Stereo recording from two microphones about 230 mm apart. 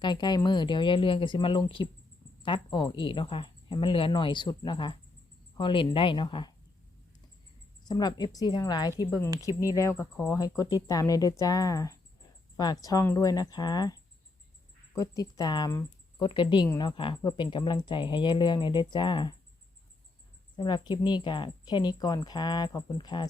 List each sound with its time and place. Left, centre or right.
0.0 s speech: centre
7.9 s speech: centre
14.9 s speech: centre
20.6 s speech: centre